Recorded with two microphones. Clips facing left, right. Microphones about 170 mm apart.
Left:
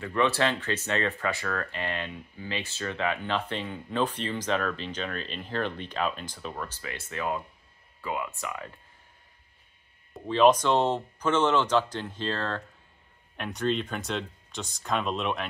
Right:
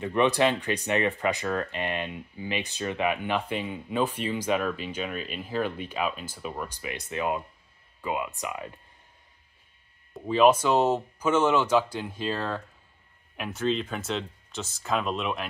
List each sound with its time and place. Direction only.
0.0 s speech: 20° right (ahead or behind)
10.1 s speech: 10° right (ahead or behind)